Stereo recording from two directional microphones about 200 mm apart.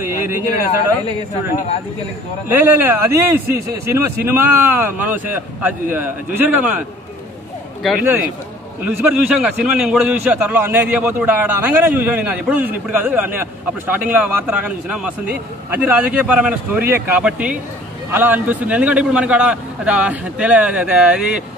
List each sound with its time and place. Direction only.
0.0 s a sound: 10° right (ahead or behind)
2.4 s a man's voice: 10° right (ahead or behind)
7.8 s a man's voice: 5° right (ahead or behind)